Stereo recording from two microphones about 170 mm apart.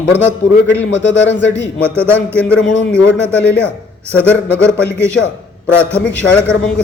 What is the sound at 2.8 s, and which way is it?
Speech, 90° left.